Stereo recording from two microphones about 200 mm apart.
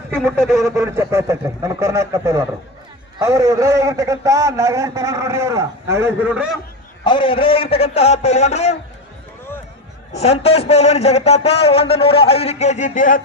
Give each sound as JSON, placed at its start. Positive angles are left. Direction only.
{"t": 0.1, "sound": "speech", "side_deg": 0}
{"t": 0.8, "sound": "a man's voice", "side_deg": -15}
{"t": 7.0, "sound": "a man's voice", "side_deg": 25}
{"t": 10.2, "sound": "a man's voice", "side_deg": 30}